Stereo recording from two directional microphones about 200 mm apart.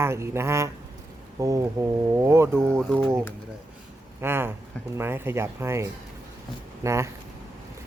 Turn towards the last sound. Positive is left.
turn(degrees=-15)  # may be behind; listen again after turning